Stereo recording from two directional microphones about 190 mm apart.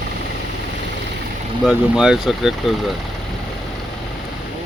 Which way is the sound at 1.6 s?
5° right (ahead or behind).